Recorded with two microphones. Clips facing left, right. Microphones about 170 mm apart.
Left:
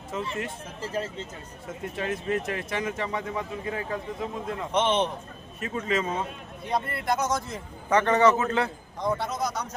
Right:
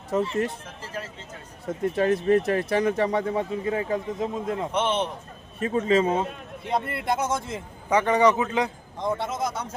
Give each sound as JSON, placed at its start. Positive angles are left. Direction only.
{"t": 0.1, "sound": "speech", "side_deg": -40}
{"t": 2.0, "sound": "speech", "side_deg": -40}
{"t": 4.7, "sound": "a man's voice", "side_deg": -5}
{"t": 5.5, "sound": "speech", "side_deg": -30}
{"t": 7.9, "sound": "a man's voice", "side_deg": -10}